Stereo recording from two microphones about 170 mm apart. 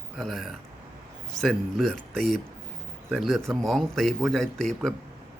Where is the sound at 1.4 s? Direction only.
Centre (ahead or behind).